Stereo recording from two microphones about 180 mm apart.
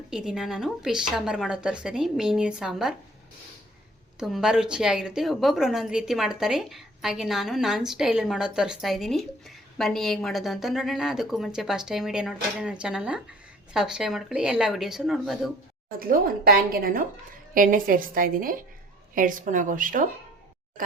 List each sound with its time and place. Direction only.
0.1 s a woman's voice: 5° right (ahead or behind)
4.2 s a woman's voice: 5° right (ahead or behind)
15.9 s a woman's voice: 55° right (ahead or behind)